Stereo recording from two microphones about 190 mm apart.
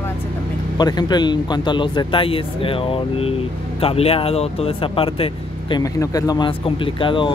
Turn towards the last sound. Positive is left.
turn(degrees=25)  # may be behind; listen again after turning